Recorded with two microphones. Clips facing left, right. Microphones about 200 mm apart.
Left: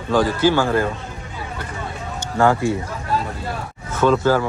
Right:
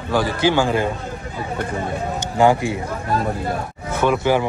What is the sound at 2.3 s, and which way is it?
Speech, 20° right (ahead or behind).